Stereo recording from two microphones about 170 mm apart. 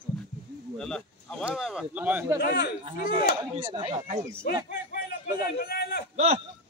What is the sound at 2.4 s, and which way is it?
Speech, 70° left (ahead or behind).